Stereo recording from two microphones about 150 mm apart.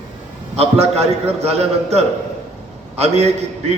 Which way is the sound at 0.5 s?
45° right (ahead or behind).